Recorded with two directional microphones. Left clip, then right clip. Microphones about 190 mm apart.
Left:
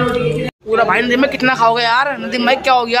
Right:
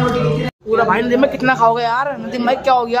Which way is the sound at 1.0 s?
15° right (ahead or behind).